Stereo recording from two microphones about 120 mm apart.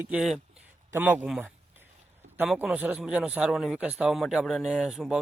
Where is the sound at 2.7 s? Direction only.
15° right (ahead or behind).